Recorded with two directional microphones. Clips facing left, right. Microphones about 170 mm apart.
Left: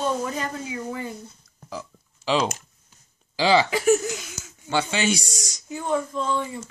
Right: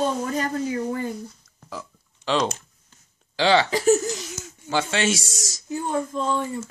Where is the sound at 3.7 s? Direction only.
35° right (ahead or behind).